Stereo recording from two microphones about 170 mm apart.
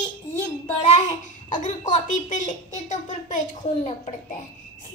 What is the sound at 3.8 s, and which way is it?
Speech, 35° left (ahead or behind).